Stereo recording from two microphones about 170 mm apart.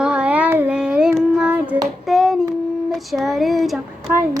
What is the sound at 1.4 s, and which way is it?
Hands, 10° right (ahead or behind).